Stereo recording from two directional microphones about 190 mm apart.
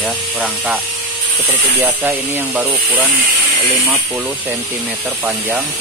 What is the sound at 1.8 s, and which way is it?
Speech, 10° right (ahead or behind).